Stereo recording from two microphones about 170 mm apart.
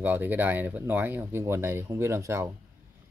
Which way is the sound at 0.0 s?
10° right (ahead or behind).